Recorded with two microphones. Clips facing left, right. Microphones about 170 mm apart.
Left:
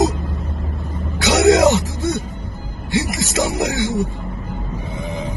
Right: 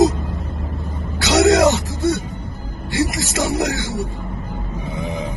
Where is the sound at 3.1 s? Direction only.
20° left (ahead or behind).